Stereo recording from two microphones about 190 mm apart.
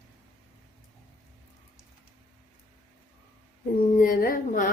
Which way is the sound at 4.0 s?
45° left (ahead or behind).